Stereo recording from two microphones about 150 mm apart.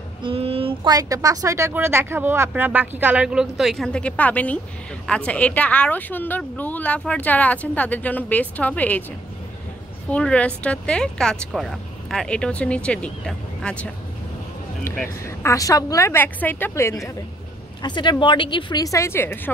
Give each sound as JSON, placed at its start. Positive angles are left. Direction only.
{"t": 0.2, "sound": "child singing", "side_deg": -40}
{"t": 0.8, "sound": "speech", "side_deg": -25}
{"t": 10.0, "sound": "speech", "side_deg": 5}
{"t": 14.9, "sound": "speech", "side_deg": 20}
{"t": 17.8, "sound": "a woman's voice", "side_deg": 30}